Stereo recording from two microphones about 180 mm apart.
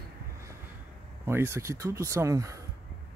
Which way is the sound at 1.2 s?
15° right (ahead or behind).